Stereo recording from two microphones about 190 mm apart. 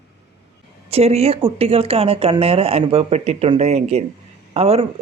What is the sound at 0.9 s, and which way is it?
Speech, 35° right (ahead or behind).